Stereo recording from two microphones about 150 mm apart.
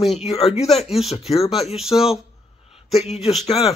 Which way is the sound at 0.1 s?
45° left (ahead or behind).